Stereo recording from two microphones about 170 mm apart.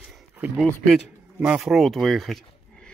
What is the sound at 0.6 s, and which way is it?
Speech, centre (ahead or behind).